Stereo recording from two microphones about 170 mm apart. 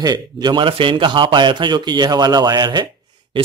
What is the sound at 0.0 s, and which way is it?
A man's voice, 25° right (ahead or behind).